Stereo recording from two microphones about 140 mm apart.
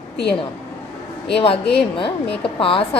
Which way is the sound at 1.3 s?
40° left (ahead or behind).